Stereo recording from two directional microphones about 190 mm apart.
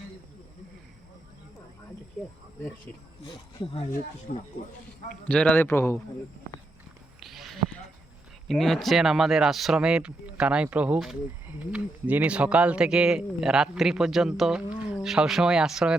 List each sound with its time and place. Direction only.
4.3 s speech: 45° left (ahead or behind)
5.3 s a man's voice: 5° left (ahead or behind)
7.2 s a sound: centre (ahead or behind)
8.4 s speech: centre (ahead or behind)